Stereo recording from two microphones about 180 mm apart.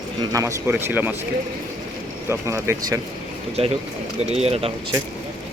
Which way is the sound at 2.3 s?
15° right (ahead or behind).